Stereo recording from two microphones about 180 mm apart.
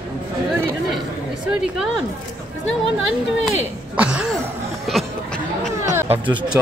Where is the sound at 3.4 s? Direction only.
5° right (ahead or behind).